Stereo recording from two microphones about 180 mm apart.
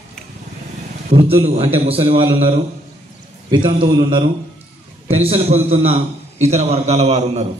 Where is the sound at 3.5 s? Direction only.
25° right (ahead or behind).